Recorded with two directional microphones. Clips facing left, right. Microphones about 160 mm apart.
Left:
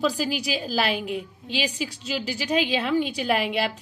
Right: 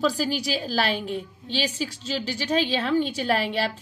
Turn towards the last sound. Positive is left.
turn(degrees=5)  # may be behind; listen again after turning